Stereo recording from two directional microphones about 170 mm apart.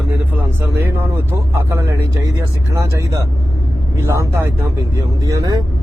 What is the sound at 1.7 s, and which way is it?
Speech, 15° right (ahead or behind).